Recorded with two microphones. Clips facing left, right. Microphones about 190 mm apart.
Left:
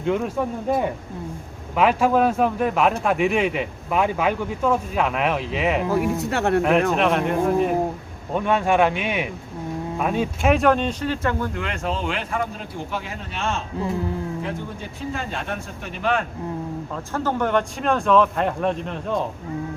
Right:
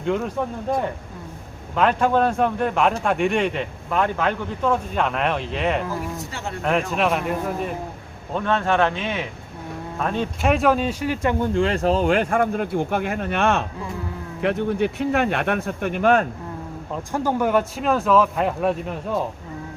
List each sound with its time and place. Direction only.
0.0 s speech: centre (ahead or behind)
1.7 s a man's voice: 5° left (ahead or behind)
5.9 s speech: 65° left (ahead or behind)
6.6 s a man's voice: centre (ahead or behind)
8.3 s a man's voice: 10° left (ahead or behind); by 16.2 s 50° right (ahead or behind)
16.9 s a man's voice: 15° right (ahead or behind)